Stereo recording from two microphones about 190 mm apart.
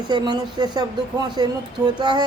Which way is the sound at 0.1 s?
20° right (ahead or behind).